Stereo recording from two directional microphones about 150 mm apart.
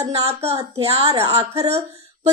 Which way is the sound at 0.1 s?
45° right (ahead or behind).